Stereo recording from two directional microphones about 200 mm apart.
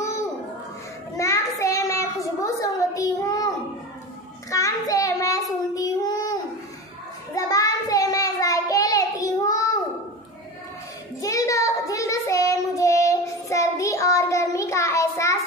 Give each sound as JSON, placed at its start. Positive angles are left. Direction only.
{"t": 1.1, "sound": "a sound", "side_deg": 15}
{"t": 4.5, "sound": "child singing", "side_deg": 15}
{"t": 7.3, "sound": "child singing", "side_deg": 15}
{"t": 11.1, "sound": "child singing", "side_deg": 15}